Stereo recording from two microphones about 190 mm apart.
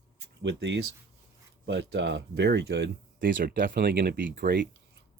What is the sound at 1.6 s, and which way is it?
Speech, 65° right (ahead or behind).